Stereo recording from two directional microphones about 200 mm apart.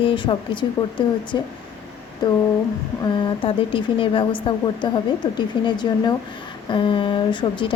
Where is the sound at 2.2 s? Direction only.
20° left (ahead or behind).